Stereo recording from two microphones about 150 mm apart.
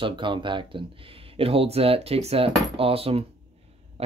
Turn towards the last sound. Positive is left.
turn(degrees=-40)  # may be behind; listen again after turning